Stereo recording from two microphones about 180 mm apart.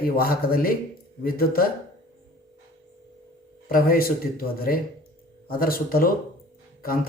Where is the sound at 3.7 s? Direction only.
55° left (ahead or behind).